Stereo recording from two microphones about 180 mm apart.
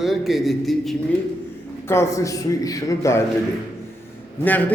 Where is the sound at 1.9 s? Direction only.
15° left (ahead or behind).